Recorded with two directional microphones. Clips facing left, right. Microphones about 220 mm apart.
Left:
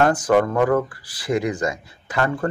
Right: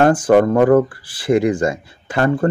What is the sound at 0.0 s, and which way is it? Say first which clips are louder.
Speech: right 5 dB; 30° right (ahead or behind).